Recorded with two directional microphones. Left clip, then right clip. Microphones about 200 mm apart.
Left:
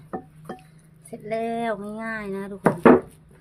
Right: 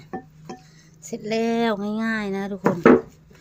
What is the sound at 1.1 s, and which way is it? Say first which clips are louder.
Speech: right 3 dB; 45° right (ahead or behind).